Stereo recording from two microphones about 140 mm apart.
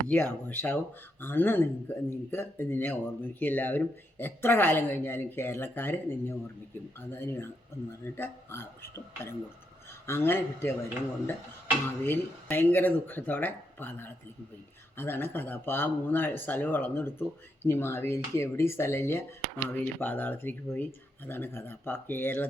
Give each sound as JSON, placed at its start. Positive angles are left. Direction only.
{"t": 0.1, "sound": "speech", "side_deg": 15}
{"t": 12.0, "sound": "speech", "side_deg": 15}